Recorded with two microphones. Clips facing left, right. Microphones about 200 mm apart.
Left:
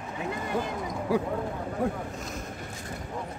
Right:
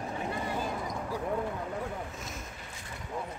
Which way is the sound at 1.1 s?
75° left (ahead or behind).